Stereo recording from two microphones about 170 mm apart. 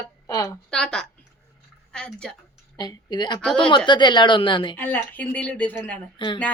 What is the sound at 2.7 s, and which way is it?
A woman's voice, 25° left (ahead or behind).